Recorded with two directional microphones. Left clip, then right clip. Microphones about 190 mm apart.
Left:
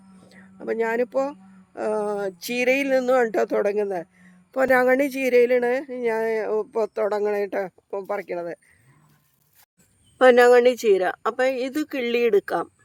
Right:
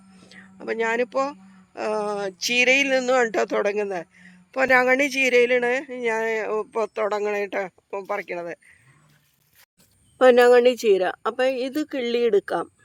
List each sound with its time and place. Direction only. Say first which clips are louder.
0.2 s speech: even; 15° left (ahead or behind)
10.2 s speech: even; 5° right (ahead or behind)